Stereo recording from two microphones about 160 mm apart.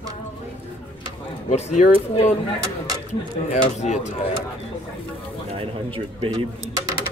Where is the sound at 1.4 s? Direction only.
45° left (ahead or behind).